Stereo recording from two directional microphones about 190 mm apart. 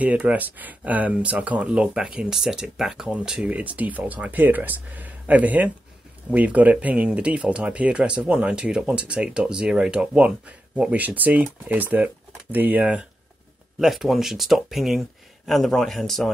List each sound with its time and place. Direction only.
0.0 s speech: 5° right (ahead or behind)